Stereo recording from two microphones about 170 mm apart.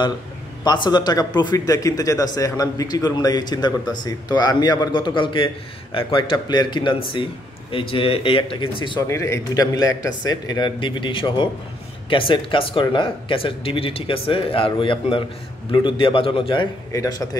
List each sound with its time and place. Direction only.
0.7 s a man's voice: 25° left (ahead or behind)
9.1 s a man's voice: 15° left (ahead or behind)